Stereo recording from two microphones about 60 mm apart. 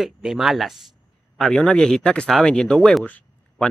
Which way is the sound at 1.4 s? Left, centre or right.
Centre.